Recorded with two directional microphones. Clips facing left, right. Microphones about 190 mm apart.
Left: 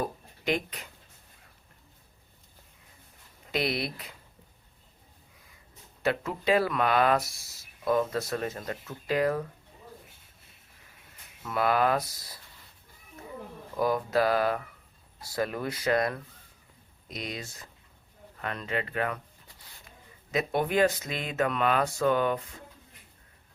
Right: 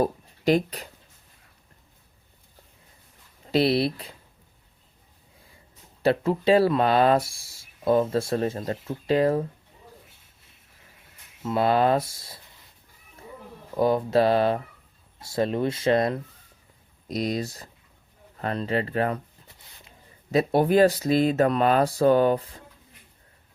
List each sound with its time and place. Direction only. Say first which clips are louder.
0.0 s speech: right 9 dB; 35° right (ahead or behind)
3.4 s speech: right 9 dB; 30° right (ahead or behind)
6.0 s speech: right 7 dB; 30° right (ahead or behind)
11.4 s speech: right 4 dB; 25° right (ahead or behind)
13.7 s speech: right 5 dB; 25° right (ahead or behind)
17.1 s speech: right 11 dB; 40° right (ahead or behind)
20.3 s speech: right 7 dB; 35° right (ahead or behind)